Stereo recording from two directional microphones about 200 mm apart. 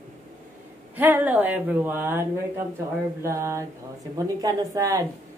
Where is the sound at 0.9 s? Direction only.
10° right (ahead or behind).